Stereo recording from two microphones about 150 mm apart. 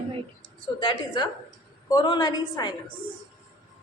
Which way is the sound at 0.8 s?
30° left (ahead or behind).